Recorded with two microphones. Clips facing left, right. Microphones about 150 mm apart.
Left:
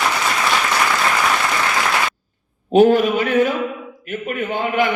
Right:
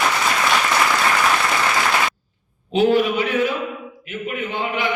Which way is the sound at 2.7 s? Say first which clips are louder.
Left 4 dB; 45° left (ahead or behind).